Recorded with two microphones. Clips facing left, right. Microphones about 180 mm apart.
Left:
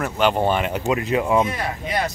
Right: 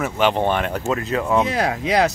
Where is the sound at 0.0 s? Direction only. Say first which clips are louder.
Even; centre (ahead or behind).